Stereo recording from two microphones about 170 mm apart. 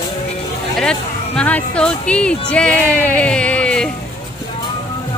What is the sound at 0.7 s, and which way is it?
Speech, 5° left (ahead or behind).